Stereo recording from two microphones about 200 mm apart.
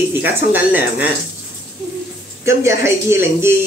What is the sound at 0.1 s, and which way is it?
Speech, 10° right (ahead or behind).